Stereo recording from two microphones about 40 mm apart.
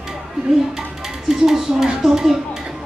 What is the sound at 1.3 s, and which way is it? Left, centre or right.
Music, centre.